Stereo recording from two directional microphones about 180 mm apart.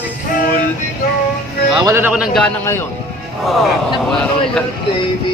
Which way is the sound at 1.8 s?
15° right (ahead or behind).